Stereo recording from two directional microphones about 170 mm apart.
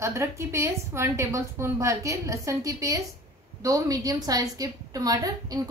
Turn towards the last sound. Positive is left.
turn(degrees=-20)  # may be behind; listen again after turning